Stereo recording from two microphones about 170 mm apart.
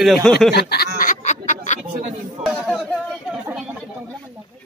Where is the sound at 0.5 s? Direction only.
70° left (ahead or behind).